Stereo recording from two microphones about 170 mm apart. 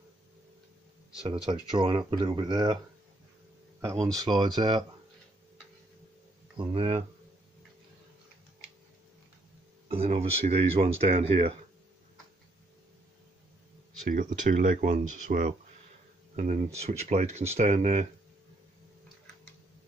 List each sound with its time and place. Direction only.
1.2 s speech: 30° right (ahead or behind)
4.0 s speech: 25° right (ahead or behind)
6.5 s speech: 30° right (ahead or behind)
9.8 s speech: 35° right (ahead or behind)
14.0 s speech: 50° right (ahead or behind)